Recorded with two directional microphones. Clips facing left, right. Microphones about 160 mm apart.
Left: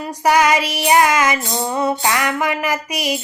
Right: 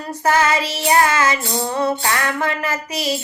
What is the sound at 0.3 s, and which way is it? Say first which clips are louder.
Music: left 2 dB; 15° left (ahead or behind).